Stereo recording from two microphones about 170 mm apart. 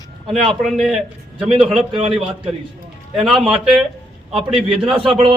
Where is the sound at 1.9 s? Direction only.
30° right (ahead or behind).